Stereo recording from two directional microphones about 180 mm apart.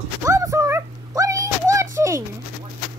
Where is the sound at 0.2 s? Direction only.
15° right (ahead or behind).